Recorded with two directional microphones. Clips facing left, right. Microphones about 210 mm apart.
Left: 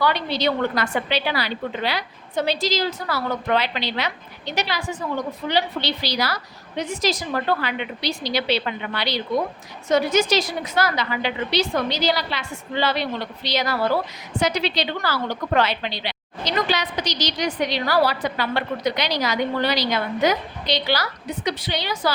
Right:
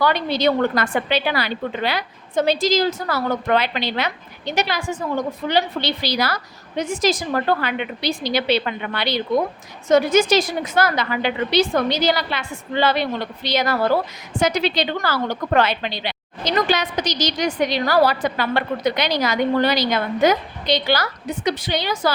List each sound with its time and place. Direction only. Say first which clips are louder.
0.0 s a woman's voice: right 3 dB; 50° right (ahead or behind)